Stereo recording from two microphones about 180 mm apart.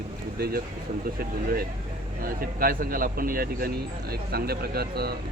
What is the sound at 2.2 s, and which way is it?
Speech, 55° right (ahead or behind).